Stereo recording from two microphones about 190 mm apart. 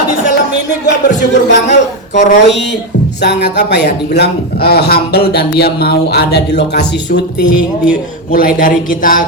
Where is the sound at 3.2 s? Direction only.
65° left (ahead or behind).